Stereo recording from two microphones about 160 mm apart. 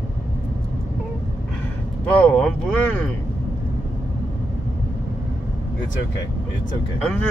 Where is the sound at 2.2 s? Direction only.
5° left (ahead or behind).